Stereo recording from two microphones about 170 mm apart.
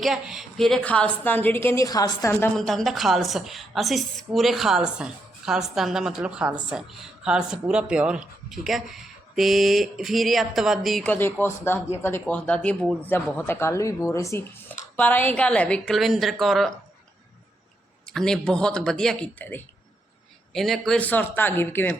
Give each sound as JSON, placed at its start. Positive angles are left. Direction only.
{"t": 0.0, "sound": "a woman's voice", "side_deg": 0}
{"t": 2.6, "sound": "a woman's voice", "side_deg": 0}
{"t": 18.1, "sound": "a woman's voice", "side_deg": 5}